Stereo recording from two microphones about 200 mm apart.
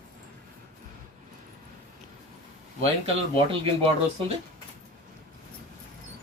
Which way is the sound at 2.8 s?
30° right (ahead or behind).